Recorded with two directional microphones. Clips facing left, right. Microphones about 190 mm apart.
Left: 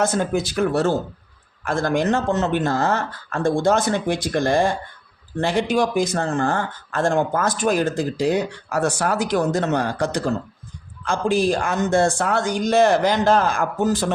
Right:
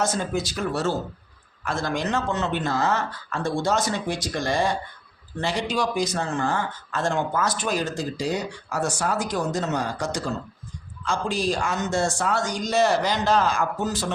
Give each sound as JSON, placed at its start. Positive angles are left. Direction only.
{"t": 0.0, "sound": "speech", "side_deg": 55}